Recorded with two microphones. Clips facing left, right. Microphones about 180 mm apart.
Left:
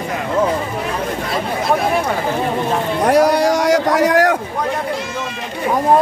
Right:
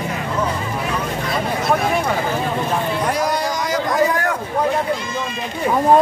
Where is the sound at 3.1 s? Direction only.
70° left (ahead or behind).